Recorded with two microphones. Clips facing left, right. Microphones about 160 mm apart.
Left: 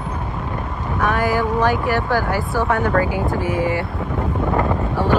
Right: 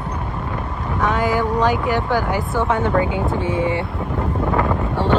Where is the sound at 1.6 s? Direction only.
20° right (ahead or behind).